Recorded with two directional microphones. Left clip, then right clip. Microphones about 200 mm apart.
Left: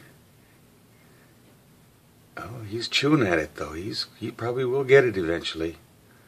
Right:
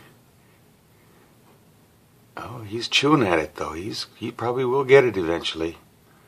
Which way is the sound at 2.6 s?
10° left (ahead or behind).